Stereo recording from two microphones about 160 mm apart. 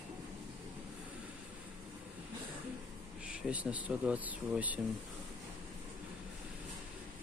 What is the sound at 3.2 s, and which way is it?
Speech, 10° right (ahead or behind).